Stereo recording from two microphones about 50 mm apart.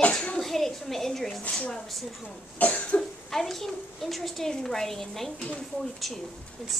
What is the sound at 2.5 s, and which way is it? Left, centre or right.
Cough, left.